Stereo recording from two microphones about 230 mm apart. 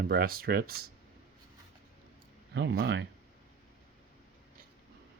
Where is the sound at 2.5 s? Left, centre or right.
Right.